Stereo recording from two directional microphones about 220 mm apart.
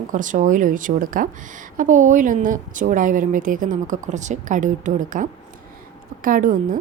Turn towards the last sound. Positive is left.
turn(degrees=-35)  # may be behind; listen again after turning